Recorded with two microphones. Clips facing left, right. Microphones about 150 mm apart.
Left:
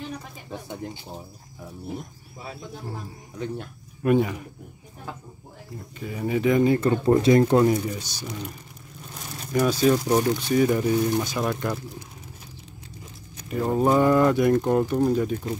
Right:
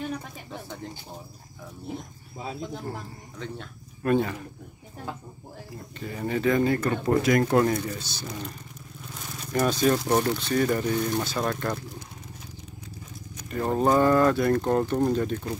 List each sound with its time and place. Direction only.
0.5 s speech: 15° left (ahead or behind)
3.3 s speech: 15° left (ahead or behind)
5.9 s speech: 5° left (ahead or behind)
9.5 s speech: 5° left (ahead or behind)
13.5 s speech: 5° left (ahead or behind)